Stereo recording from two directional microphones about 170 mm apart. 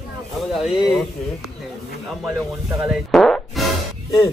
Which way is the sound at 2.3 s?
15° right (ahead or behind).